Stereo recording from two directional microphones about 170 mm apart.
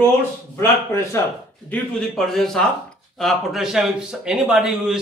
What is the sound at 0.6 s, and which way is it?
Speech, 15° left (ahead or behind).